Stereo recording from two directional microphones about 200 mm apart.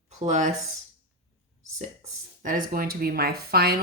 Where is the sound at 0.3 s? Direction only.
35° right (ahead or behind).